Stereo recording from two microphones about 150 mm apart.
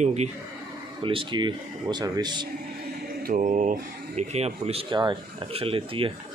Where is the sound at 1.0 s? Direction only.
35° right (ahead or behind).